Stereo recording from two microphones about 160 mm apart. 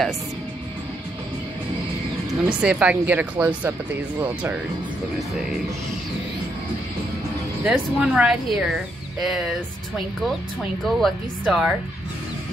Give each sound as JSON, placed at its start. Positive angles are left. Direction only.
{"t": 2.5, "sound": "speech", "side_deg": -5}
{"t": 7.6, "sound": "speech", "side_deg": -5}